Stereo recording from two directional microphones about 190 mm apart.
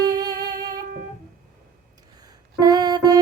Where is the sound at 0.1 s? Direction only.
20° right (ahead or behind).